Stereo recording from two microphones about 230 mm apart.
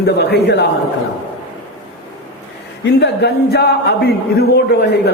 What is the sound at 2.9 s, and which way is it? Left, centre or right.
A man's voice, left.